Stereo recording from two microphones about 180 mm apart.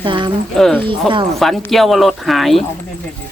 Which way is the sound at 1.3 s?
Centre (ahead or behind).